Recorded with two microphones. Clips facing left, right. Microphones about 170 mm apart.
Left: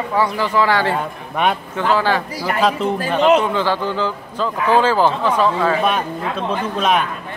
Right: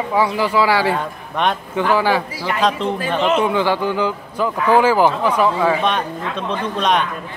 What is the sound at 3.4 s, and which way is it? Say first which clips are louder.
A man's voice: right 2 dB; 15° right (ahead or behind).